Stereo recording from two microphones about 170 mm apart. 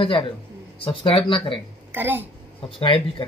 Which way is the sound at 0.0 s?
30° left (ahead or behind).